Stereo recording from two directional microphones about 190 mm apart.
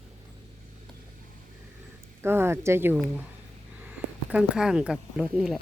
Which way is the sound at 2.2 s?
10° right (ahead or behind).